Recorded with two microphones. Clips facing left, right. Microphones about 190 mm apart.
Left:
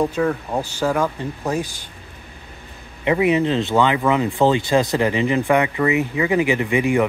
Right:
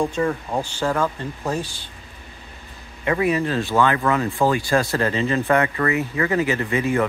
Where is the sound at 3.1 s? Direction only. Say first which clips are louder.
Left 3 dB; 20° left (ahead or behind).